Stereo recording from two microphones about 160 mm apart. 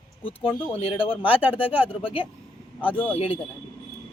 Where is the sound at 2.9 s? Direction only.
10° left (ahead or behind).